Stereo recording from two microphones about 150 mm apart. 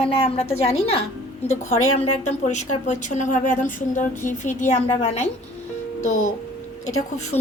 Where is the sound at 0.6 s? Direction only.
40° left (ahead or behind).